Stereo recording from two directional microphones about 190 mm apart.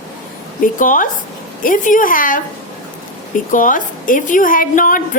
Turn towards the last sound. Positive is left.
turn(degrees=45)  # may be behind; listen again after turning